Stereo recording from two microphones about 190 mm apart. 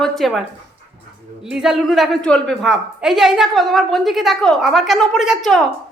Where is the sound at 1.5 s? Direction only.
Centre (ahead or behind).